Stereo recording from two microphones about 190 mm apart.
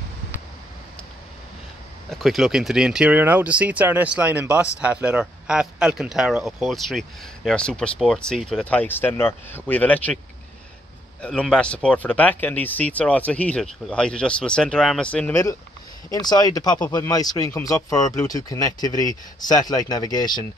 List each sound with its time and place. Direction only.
2.0 s speech: centre (ahead or behind)
11.1 s speech: 5° left (ahead or behind)
16.1 s speech: 20° left (ahead or behind)